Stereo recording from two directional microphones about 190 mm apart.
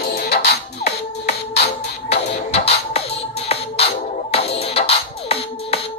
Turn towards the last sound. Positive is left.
turn(degrees=30)  # may be behind; listen again after turning